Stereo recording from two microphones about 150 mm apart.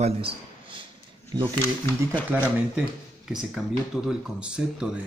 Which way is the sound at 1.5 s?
15° left (ahead or behind).